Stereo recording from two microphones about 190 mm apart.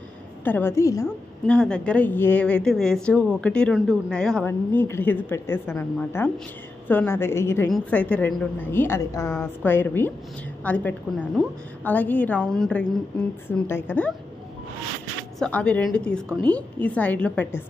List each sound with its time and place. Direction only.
0.4 s a woman's voice: 10° left (ahead or behind)
1.0 s a woman's voice: 5° left (ahead or behind)
15.3 s a woman's voice: 5° left (ahead or behind)